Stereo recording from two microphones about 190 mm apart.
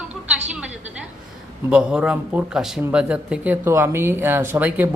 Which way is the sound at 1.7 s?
5° right (ahead or behind).